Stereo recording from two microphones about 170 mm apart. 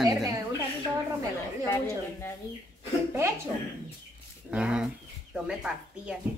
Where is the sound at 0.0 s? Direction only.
20° right (ahead or behind).